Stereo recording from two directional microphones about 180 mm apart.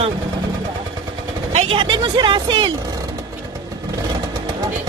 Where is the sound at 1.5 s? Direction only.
35° right (ahead or behind).